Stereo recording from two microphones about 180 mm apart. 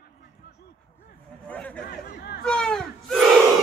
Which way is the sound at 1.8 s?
55° left (ahead or behind).